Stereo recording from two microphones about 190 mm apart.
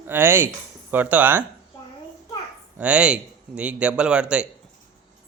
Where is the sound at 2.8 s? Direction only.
5° right (ahead or behind).